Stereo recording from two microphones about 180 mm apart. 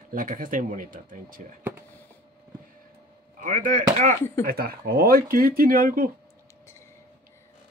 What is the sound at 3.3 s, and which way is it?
Speech, 50° right (ahead or behind).